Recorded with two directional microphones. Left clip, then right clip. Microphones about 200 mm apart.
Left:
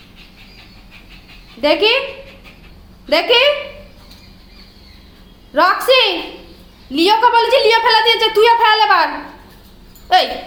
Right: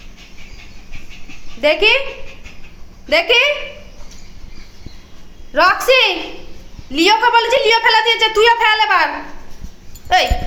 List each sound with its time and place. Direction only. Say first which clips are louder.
1.6 s a woman's voice: right 1 dB; 5° right (ahead or behind)
3.1 s a woman's voice: left 1 dB; 5° right (ahead or behind)
5.5 s a woman's voice: even; 5° right (ahead or behind)